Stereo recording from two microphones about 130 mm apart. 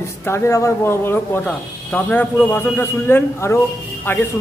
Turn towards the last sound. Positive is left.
turn(degrees=15)  # may be behind; listen again after turning